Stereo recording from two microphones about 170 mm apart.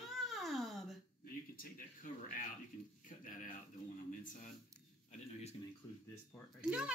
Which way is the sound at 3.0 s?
50° left (ahead or behind).